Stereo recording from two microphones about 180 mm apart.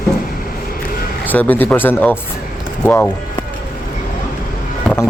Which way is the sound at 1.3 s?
10° left (ahead or behind).